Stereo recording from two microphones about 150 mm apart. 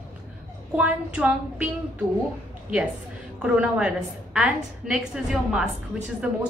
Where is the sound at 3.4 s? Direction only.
5° right (ahead or behind).